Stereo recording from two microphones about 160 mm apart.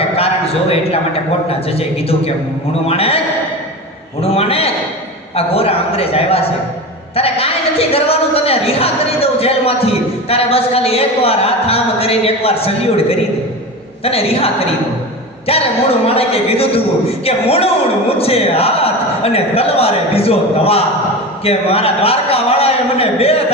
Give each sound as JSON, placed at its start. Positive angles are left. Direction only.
{"t": 0.2, "sound": "a man's voice", "side_deg": 40}
{"t": 2.8, "sound": "speech", "side_deg": 40}
{"t": 4.2, "sound": "speech", "side_deg": 40}